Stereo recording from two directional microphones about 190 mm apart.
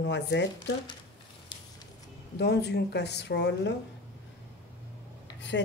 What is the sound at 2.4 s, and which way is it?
A woman's voice, 60° left (ahead or behind).